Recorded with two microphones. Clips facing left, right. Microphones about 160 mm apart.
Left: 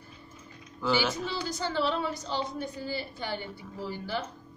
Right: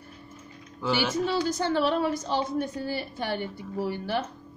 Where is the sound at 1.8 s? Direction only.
55° right (ahead or behind).